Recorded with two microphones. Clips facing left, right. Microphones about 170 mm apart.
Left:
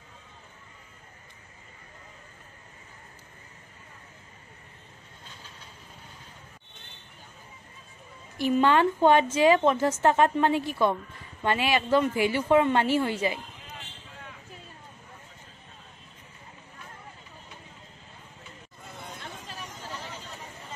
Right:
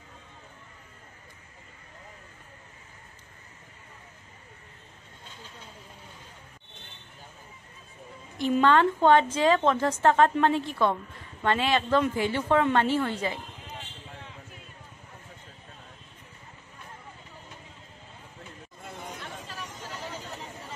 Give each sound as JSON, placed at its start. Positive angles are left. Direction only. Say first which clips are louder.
{"t": 8.5, "sound": "a woman's voice", "louder": "even", "side_deg": 10}